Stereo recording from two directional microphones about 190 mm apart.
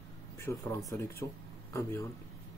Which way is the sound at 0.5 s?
15° left (ahead or behind).